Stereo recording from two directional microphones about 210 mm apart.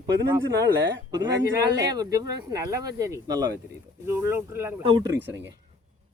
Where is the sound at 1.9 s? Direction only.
15° right (ahead or behind).